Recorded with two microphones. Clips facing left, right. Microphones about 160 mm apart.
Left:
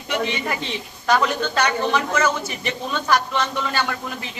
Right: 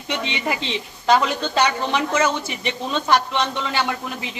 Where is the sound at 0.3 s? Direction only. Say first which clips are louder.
Right 1 dB; 20° right (ahead or behind).